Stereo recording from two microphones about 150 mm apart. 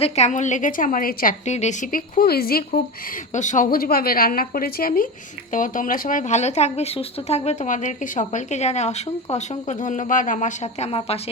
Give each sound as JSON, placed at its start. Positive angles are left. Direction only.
{"t": 0.0, "sound": "a woman's voice", "side_deg": 50}
{"t": 1.5, "sound": "a woman's voice", "side_deg": 50}
{"t": 3.3, "sound": "a woman's voice", "side_deg": 55}
{"t": 5.5, "sound": "speech", "side_deg": 60}